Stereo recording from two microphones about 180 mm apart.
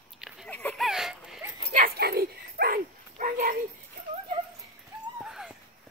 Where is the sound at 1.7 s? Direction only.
55° right (ahead or behind).